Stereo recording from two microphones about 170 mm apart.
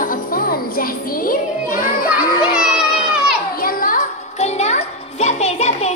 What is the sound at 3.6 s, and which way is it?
Music, 55° left (ahead or behind).